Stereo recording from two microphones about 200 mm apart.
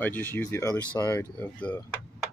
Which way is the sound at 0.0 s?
10° left (ahead or behind).